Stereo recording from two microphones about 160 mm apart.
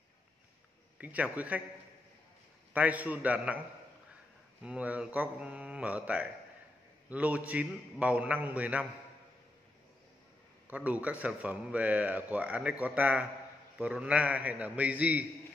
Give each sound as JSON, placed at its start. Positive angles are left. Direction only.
{"t": 0.9, "sound": "a man's voice", "side_deg": -10}
{"t": 2.7, "sound": "a man's voice", "side_deg": -10}
{"t": 4.6, "sound": "a man's voice", "side_deg": -10}
{"t": 10.7, "sound": "a man's voice", "side_deg": -10}